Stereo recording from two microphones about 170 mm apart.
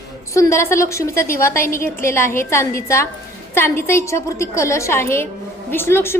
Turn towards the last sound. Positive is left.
turn(degrees=15)  # may be behind; listen again after turning